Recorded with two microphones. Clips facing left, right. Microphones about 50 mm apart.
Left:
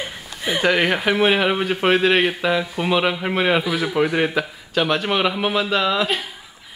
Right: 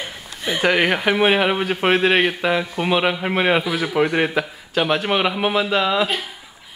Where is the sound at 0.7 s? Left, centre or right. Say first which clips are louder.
Right 1 dB; centre.